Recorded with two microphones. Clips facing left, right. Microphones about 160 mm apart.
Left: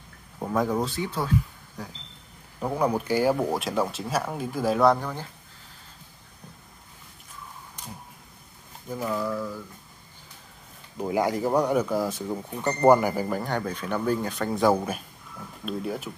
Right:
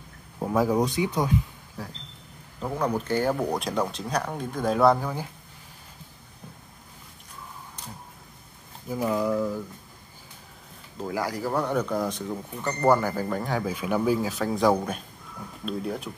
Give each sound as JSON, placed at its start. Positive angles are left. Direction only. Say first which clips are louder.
{"t": 0.4, "sound": "speech", "louder": "right 2 dB", "side_deg": -5}
{"t": 1.8, "sound": "speech", "louder": "right 1 dB", "side_deg": -5}
{"t": 2.6, "sound": "speech", "louder": "left 2 dB", "side_deg": 10}
{"t": 8.8, "sound": "speech", "louder": "right 3 dB", "side_deg": -10}
{"t": 11.0, "sound": "speech", "louder": "left 4 dB", "side_deg": 20}